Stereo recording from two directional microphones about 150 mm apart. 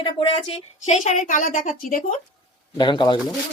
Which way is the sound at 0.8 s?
55° left (ahead or behind).